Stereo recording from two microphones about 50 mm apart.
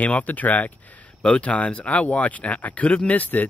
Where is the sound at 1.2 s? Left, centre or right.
Left.